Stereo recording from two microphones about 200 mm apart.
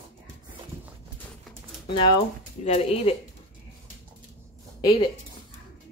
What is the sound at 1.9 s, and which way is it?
Speech, 25° left (ahead or behind).